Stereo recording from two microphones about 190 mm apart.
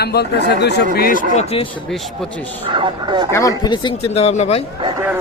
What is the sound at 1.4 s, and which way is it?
Speech, 30° left (ahead or behind).